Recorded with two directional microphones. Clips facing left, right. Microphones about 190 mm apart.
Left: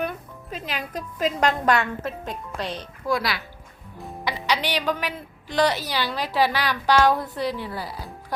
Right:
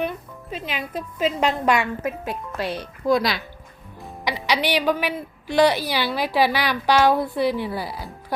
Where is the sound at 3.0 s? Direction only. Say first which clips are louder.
Right 5 dB; 20° right (ahead or behind).